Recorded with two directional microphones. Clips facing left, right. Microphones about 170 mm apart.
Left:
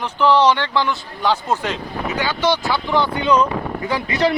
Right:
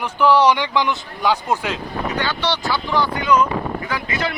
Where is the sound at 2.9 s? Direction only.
25° left (ahead or behind).